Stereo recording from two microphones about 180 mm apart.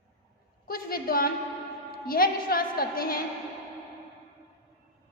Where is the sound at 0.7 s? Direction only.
55° left (ahead or behind).